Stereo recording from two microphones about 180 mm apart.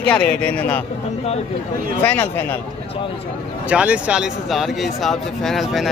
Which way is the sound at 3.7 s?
5° right (ahead or behind).